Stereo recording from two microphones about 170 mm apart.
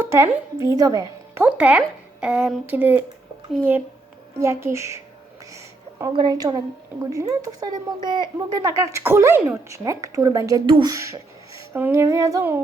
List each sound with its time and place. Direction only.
0.0 s speech: 15° right (ahead or behind)
1.4 s speech: 10° right (ahead or behind)
6.1 s speech: 25° right (ahead or behind)